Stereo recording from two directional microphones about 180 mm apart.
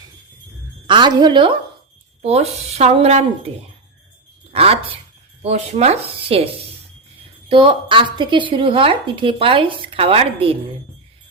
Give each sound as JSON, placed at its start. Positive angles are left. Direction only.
{"t": 0.9, "sound": "speech", "side_deg": -25}
{"t": 4.5, "sound": "speech", "side_deg": -35}